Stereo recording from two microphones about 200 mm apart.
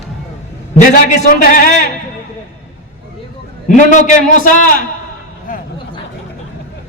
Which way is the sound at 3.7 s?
40° left (ahead or behind).